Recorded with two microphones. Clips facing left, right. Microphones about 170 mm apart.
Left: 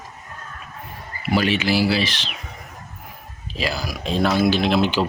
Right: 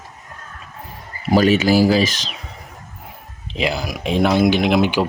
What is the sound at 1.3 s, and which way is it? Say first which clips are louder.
Speech: right 6 dB; 40° right (ahead or behind).